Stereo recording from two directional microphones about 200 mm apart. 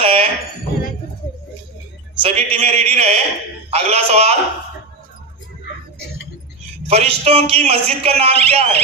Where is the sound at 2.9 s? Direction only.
30° right (ahead or behind).